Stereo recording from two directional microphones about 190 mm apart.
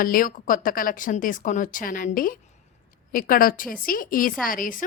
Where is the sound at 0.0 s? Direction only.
45° left (ahead or behind).